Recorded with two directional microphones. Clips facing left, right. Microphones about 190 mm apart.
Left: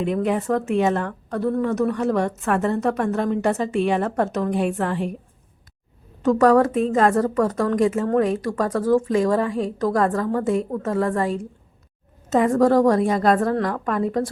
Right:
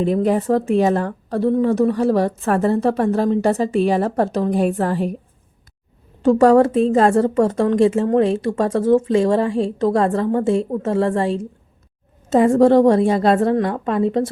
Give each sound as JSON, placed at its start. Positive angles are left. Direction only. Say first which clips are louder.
{"t": 0.0, "sound": "a woman's voice", "louder": "right 4 dB", "side_deg": -35}
{"t": 6.2, "sound": "a woman's voice", "louder": "right 4 dB", "side_deg": -30}